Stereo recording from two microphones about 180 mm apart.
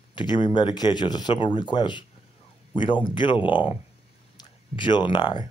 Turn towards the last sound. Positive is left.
turn(degrees=25)  # may be behind; listen again after turning